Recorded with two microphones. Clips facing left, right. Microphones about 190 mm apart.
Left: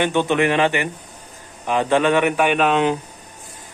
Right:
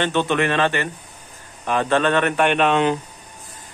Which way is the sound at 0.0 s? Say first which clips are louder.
Left 2 dB; 15° left (ahead or behind).